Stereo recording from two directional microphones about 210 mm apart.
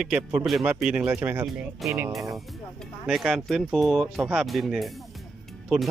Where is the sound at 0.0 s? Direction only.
5° right (ahead or behind).